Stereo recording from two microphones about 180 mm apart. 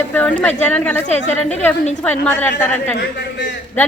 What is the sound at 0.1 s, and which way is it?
Speech, 10° left (ahead or behind).